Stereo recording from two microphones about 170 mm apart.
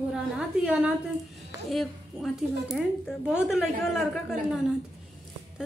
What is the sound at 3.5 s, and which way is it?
A woman's voice, centre (ahead or behind).